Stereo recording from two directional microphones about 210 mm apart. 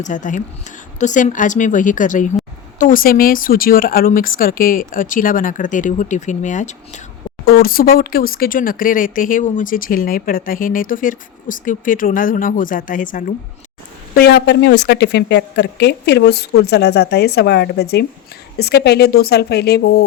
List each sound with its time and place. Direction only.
0.0 s speech: 35° left (ahead or behind)
7.4 s a woman's voice: 45° left (ahead or behind)